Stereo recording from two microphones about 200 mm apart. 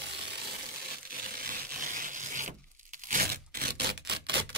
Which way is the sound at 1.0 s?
45° right (ahead or behind).